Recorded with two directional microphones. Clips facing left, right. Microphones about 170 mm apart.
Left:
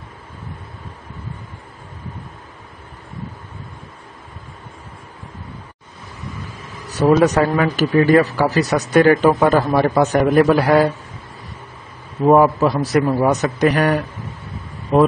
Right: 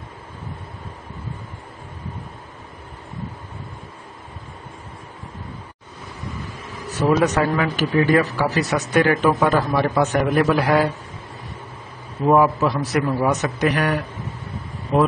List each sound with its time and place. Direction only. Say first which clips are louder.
6.9 s speech: left 4 dB; 40° left (ahead or behind)
12.3 s speech: left 4 dB; 40° left (ahead or behind)